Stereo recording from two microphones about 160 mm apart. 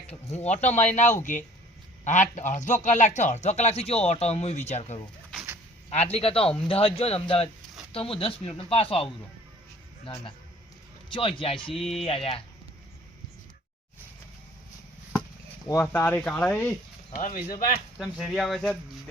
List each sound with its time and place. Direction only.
0.3 s speech: 45° left (ahead or behind)
11.1 s speech: 35° left (ahead or behind)
15.6 s speech: 15° left (ahead or behind)
17.2 s speech: 55° left (ahead or behind)
17.9 s speech: centre (ahead or behind)